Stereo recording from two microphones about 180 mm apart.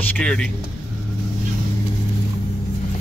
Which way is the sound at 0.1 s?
5° left (ahead or behind).